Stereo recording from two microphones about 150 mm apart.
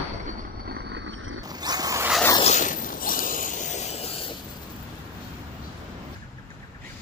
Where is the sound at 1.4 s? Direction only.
25° right (ahead or behind).